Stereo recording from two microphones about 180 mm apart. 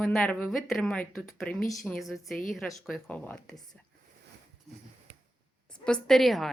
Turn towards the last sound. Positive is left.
turn(degrees=0)  # may be behind; listen again after turning